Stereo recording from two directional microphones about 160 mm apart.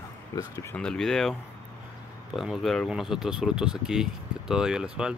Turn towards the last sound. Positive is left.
turn(degrees=-5)  # may be behind; listen again after turning